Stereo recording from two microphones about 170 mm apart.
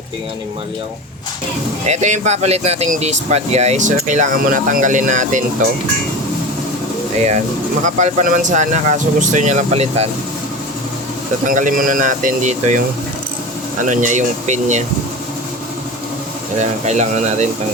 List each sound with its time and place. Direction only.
1.9 s speech: 45° right (ahead or behind)
7.9 s speech: 45° right (ahead or behind)
11.4 s speech: 50° right (ahead or behind)
13.8 s speech: 45° right (ahead or behind)
16.6 s speech: 40° right (ahead or behind)